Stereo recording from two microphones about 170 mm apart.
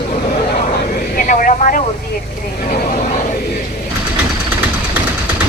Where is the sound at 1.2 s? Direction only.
50° left (ahead or behind).